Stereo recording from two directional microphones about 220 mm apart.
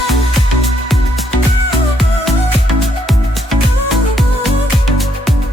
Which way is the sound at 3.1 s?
Centre (ahead or behind).